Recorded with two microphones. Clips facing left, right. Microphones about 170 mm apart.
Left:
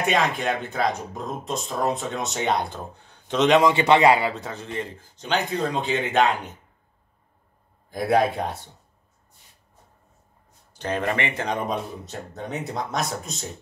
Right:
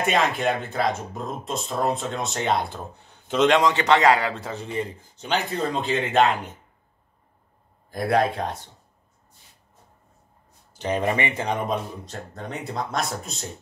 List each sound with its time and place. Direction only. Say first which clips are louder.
0.0 s speech: right 1 dB; centre (ahead or behind)
3.7 s speech: left 1 dB; 10° left (ahead or behind)
7.9 s speech: left 1 dB; centre (ahead or behind)
10.8 s speech: right 2 dB; 15° right (ahead or behind)